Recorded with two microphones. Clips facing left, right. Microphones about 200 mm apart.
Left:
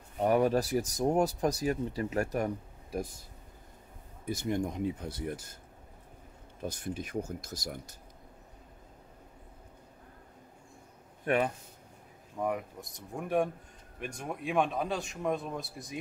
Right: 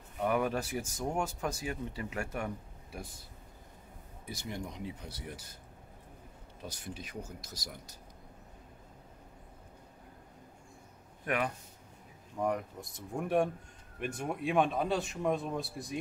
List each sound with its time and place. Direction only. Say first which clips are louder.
0.2 s speech: left 5 dB; 35° left (ahead or behind)
4.3 s speech: left 9 dB; 50° left (ahead or behind)
6.6 s speech: left 7 dB; 50° left (ahead or behind)
11.2 s speech: left 5 dB; 30° left (ahead or behind)
12.4 s speech: even; centre (ahead or behind)